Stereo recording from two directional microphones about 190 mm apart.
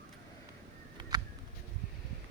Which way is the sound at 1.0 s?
20° right (ahead or behind).